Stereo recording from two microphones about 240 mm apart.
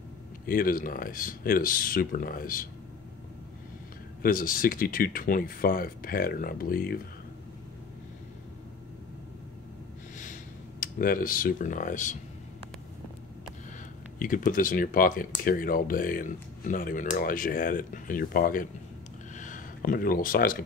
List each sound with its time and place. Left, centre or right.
0.5 s speech: left
4.2 s speech: left
10.8 s speech: left
14.1 s speech: left
19.3 s a sound: left